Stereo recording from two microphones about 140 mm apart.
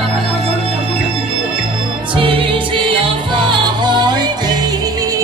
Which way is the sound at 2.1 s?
40° right (ahead or behind).